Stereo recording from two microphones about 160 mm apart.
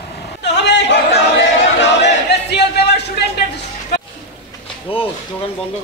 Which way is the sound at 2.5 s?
90° left.